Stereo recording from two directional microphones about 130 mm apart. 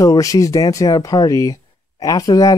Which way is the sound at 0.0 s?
25° left (ahead or behind).